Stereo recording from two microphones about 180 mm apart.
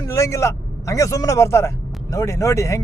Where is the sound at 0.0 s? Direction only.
15° left (ahead or behind).